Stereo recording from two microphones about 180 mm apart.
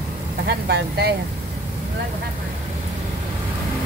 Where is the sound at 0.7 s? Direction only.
65° right (ahead or behind).